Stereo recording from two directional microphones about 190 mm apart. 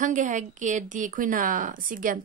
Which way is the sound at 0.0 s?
40° right (ahead or behind).